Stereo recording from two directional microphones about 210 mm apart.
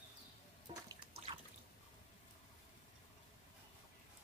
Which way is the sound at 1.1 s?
25° right (ahead or behind).